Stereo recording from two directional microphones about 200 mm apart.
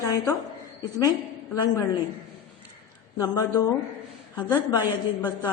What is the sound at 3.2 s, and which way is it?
A woman's voice, 20° left (ahead or behind).